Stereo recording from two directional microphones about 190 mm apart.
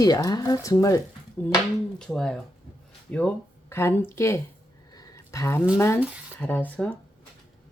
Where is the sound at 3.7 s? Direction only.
10° left (ahead or behind).